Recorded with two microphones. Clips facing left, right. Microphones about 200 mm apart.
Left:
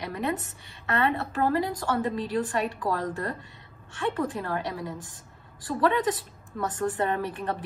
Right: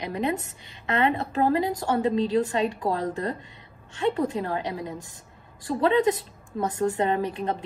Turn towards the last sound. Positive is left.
turn(degrees=-15)  # may be behind; listen again after turning